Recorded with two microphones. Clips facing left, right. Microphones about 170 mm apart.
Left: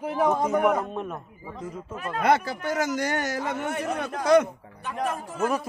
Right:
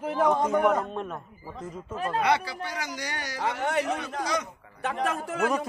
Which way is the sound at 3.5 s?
90° right.